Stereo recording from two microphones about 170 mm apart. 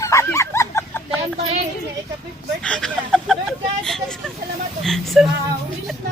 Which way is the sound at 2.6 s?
5° left (ahead or behind).